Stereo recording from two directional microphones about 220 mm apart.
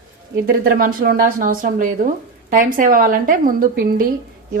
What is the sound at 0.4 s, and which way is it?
Speech, 45° right (ahead or behind).